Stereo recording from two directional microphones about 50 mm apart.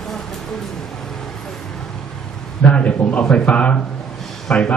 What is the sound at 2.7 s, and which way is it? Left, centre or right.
A man's voice, left.